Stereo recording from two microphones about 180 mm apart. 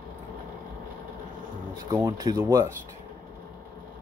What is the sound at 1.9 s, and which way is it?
Speech, 20° right (ahead or behind).